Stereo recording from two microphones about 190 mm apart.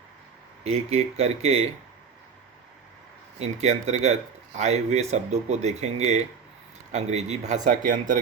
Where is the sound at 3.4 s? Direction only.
35° right (ahead or behind).